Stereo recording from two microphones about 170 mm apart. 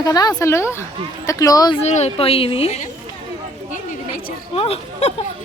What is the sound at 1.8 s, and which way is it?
Speech, 40° left (ahead or behind).